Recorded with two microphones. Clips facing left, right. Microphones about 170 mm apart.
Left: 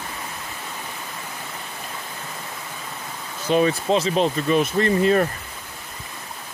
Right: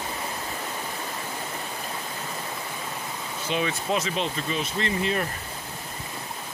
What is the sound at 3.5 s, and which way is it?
Speech, 40° left (ahead or behind).